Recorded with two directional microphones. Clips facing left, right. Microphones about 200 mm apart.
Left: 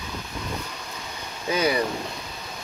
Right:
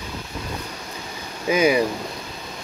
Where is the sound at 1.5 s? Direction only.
10° right (ahead or behind).